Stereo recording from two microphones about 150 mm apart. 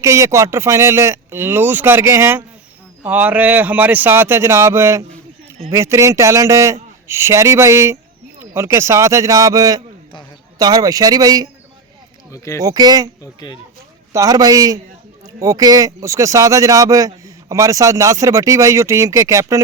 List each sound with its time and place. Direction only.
0.0 s speech: 20° right (ahead or behind)
12.3 s speech: 20° left (ahead or behind)
12.6 s speech: 25° right (ahead or behind)
13.2 s speech: 30° left (ahead or behind)
14.1 s speech: 20° right (ahead or behind)